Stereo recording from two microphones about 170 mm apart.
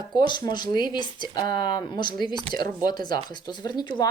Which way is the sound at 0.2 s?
25° left (ahead or behind).